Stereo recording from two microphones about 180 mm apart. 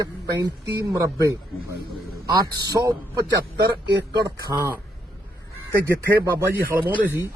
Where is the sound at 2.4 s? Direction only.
20° right (ahead or behind).